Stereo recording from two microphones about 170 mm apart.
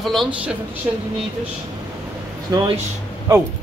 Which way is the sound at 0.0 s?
Centre (ahead or behind).